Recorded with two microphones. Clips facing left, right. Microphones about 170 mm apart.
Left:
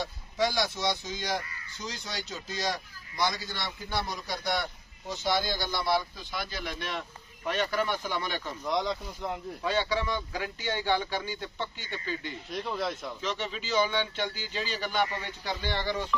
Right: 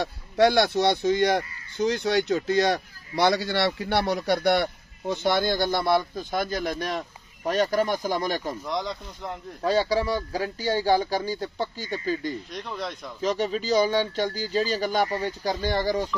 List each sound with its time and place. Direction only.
0.0 s speech: 60° right (ahead or behind); by 8.5 s 40° right (ahead or behind)
8.6 s speech: centre (ahead or behind)
9.6 s speech: 35° right (ahead or behind)
12.4 s speech: centre (ahead or behind)
13.2 s speech: 40° right (ahead or behind)